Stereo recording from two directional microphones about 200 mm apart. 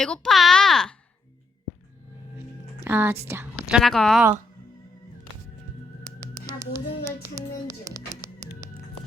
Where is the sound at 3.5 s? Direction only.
Centre (ahead or behind).